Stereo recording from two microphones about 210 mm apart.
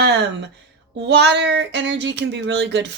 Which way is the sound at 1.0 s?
55° right (ahead or behind).